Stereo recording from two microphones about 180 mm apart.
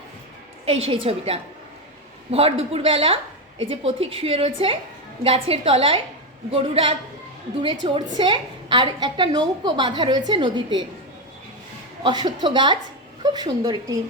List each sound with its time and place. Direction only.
1.0 s a woman's voice: 35° right (ahead or behind)
12.0 s a woman's voice: 25° right (ahead or behind)